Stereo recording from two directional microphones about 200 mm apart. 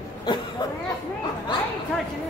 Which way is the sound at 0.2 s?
20° left (ahead or behind).